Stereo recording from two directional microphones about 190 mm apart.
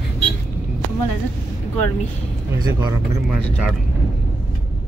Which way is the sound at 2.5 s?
20° right (ahead or behind).